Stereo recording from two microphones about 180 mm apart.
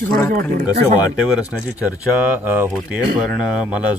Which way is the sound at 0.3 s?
55° right (ahead or behind).